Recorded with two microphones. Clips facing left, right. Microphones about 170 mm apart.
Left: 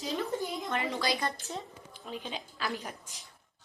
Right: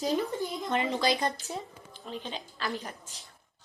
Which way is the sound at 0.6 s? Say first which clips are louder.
Right 5 dB; 20° right (ahead or behind).